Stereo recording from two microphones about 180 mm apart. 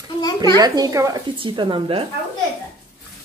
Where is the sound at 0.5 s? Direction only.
20° right (ahead or behind).